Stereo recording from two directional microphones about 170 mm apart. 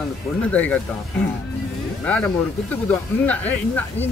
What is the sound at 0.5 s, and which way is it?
Speech, 10° left (ahead or behind).